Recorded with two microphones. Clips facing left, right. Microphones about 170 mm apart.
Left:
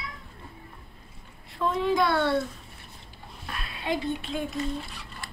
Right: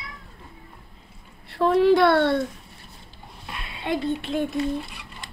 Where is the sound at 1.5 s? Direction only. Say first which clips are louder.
Right 8 dB; 70° right (ahead or behind).